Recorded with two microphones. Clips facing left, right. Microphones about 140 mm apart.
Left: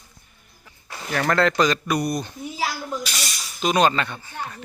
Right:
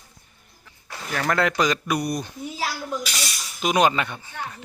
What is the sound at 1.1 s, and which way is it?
Speech, 5° right (ahead or behind).